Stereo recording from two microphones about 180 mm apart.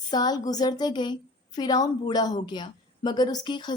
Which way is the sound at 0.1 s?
20° left (ahead or behind).